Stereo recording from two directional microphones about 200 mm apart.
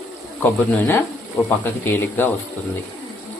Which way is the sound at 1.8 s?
10° left (ahead or behind).